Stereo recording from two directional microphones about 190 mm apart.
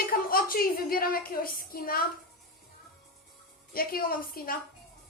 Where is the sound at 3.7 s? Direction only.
50° left (ahead or behind).